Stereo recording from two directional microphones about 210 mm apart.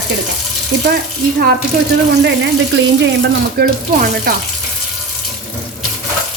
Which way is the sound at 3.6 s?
50° right (ahead or behind).